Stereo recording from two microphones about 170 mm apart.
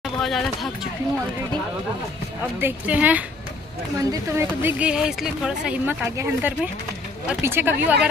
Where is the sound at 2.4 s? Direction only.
10° right (ahead or behind).